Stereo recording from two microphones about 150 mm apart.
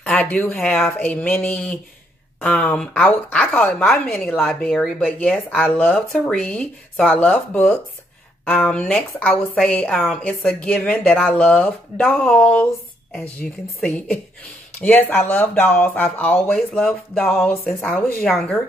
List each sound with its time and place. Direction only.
0.0 s a woman's voice: 10° left (ahead or behind)